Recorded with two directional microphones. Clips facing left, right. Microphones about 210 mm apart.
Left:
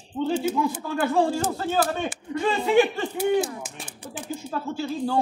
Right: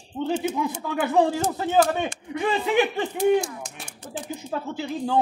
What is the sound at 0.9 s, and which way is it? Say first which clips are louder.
Speech: right 2 dB; 20° right (ahead or behind).